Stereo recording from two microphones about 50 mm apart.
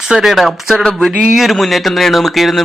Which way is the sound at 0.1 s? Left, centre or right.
Centre.